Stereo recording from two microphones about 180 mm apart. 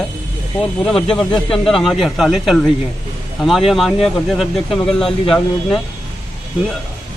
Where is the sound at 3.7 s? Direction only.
Centre (ahead or behind).